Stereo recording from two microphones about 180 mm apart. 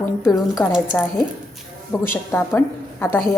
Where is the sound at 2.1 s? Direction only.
15° left (ahead or behind).